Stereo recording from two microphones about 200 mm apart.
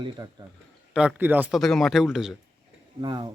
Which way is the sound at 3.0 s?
20° right (ahead or behind).